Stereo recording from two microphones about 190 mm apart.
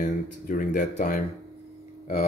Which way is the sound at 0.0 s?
40° left (ahead or behind).